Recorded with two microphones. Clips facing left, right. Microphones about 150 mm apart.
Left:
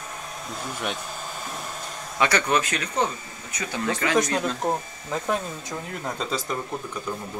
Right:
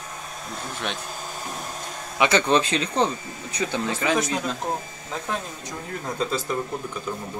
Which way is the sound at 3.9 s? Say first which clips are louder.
Left 1 dB; 10° right (ahead or behind).